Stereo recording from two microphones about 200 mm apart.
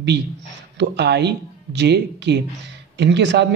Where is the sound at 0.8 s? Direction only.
55° right (ahead or behind).